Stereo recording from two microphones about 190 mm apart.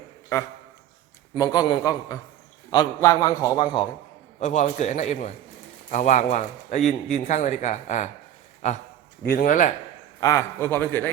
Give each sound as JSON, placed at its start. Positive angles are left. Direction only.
{"t": 1.3, "sound": "a man's voice", "side_deg": 20}
{"t": 4.4, "sound": "speech", "side_deg": 40}
{"t": 9.2, "sound": "speech", "side_deg": 50}
{"t": 10.2, "sound": "a man's voice", "side_deg": 15}